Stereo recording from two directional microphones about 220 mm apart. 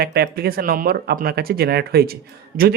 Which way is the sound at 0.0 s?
45° right (ahead or behind).